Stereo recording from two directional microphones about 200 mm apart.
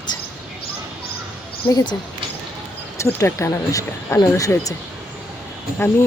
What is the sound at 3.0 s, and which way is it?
Speech, 15° left (ahead or behind).